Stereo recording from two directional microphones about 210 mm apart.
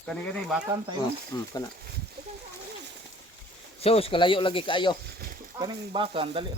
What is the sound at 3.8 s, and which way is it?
Speech, 25° left (ahead or behind).